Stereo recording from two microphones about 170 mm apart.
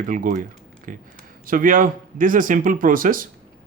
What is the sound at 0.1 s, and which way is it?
Speech, 50° right (ahead or behind).